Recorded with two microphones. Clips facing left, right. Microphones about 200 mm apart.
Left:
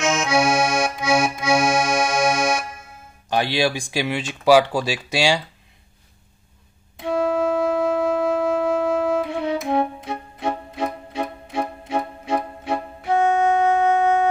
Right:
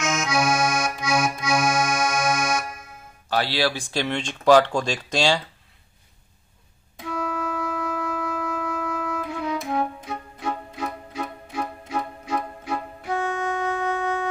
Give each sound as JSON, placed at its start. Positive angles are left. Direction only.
{"t": 0.0, "sound": "accordion", "side_deg": 30}
{"t": 3.3, "sound": "speech", "side_deg": 15}
{"t": 7.0, "sound": "wind instrument", "side_deg": 30}
{"t": 9.3, "sound": "music", "side_deg": 30}